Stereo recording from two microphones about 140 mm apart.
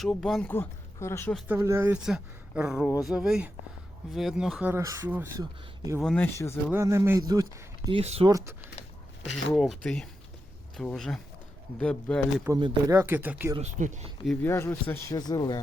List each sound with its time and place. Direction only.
0.0 s speech: centre (ahead or behind)
0.5 s speech: 15° left (ahead or behind)
1.5 s speech: 20° right (ahead or behind); by 4.7 s 5° right (ahead or behind)
4.7 s speech: 20° right (ahead or behind)
5.4 s speech: 25° right (ahead or behind)
6.0 s speech: 10° left (ahead or behind)
6.7 s speech: 20° right (ahead or behind)
7.9 s speech: 45° right (ahead or behind)
8.3 s speech: 25° right (ahead or behind)
9.6 s speech: centre (ahead or behind)
12.5 s speech: 20° right (ahead or behind)
13.6 s speech: 60° right (ahead or behind)
14.4 s speech: 20° left (ahead or behind)